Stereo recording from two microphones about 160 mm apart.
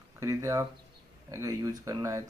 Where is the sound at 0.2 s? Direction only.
20° right (ahead or behind).